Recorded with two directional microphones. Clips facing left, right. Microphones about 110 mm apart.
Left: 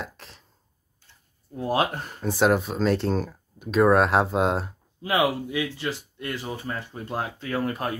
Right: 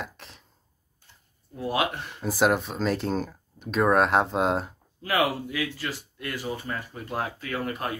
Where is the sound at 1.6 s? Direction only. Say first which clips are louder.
Left 3 dB; 35° left (ahead or behind).